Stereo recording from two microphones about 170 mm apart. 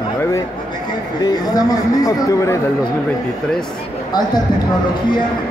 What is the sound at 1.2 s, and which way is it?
Speech, 20° left (ahead or behind).